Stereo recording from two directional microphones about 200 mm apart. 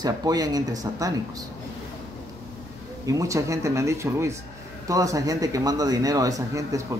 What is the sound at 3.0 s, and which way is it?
Speech, 15° right (ahead or behind).